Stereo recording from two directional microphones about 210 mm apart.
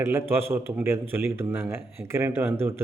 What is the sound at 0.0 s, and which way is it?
A man's voice, 10° right (ahead or behind).